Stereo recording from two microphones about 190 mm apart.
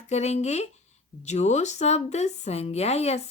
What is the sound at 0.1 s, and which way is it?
A woman's voice, 35° left (ahead or behind).